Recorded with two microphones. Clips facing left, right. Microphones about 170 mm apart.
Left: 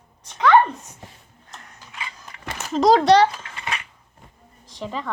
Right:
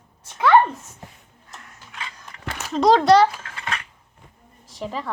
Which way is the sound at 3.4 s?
15° left (ahead or behind).